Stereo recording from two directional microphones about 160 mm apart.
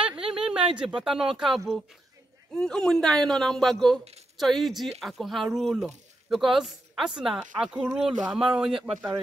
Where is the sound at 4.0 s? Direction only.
40° right (ahead or behind).